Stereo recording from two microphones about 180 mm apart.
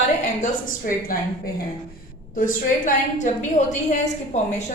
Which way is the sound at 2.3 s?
50° left (ahead or behind).